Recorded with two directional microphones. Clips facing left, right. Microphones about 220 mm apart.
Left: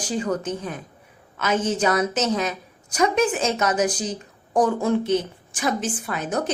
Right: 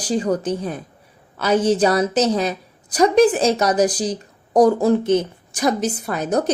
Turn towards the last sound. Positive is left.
turn(degrees=-40)  # may be behind; listen again after turning